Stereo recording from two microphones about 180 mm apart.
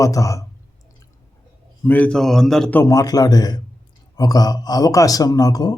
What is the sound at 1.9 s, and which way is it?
Speech, 10° left (ahead or behind).